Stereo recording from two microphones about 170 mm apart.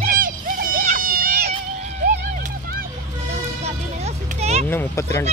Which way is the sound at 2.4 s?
60° right (ahead or behind).